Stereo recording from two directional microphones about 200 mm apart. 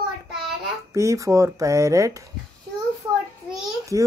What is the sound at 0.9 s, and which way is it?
Speech, 15° right (ahead or behind).